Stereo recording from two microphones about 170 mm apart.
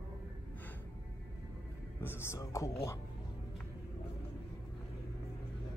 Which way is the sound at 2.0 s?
15° left (ahead or behind).